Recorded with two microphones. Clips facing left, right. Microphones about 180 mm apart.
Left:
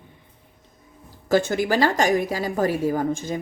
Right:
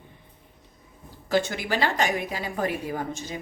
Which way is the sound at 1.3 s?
45° left (ahead or behind).